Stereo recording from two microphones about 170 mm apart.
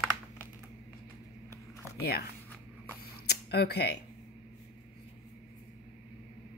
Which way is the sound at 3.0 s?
75° left (ahead or behind).